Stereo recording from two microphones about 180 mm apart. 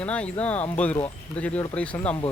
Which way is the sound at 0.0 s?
10° left (ahead or behind).